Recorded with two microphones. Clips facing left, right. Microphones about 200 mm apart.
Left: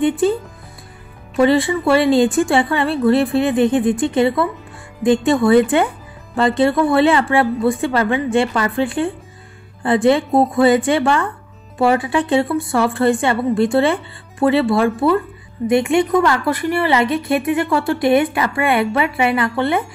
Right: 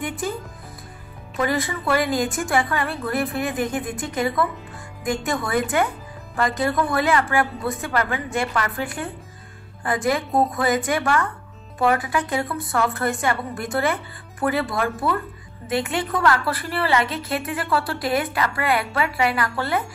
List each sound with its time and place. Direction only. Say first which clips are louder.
0.0 s a woman's voice: left 12 dB; 30° left (ahead or behind)